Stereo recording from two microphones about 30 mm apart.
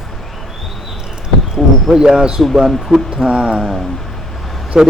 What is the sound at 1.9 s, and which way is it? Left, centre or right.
Speech, centre.